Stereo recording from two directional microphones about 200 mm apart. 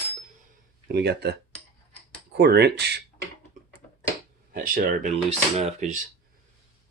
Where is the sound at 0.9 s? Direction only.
55° right (ahead or behind).